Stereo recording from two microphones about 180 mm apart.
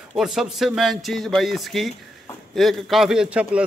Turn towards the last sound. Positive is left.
turn(degrees=-5)  # may be behind; listen again after turning